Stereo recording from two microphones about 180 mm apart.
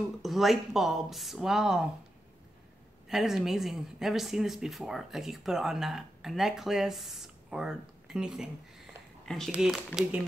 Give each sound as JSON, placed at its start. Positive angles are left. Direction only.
{"t": 0.2, "sound": "a woman's voice", "side_deg": 0}
{"t": 3.1, "sound": "a woman's voice", "side_deg": 0}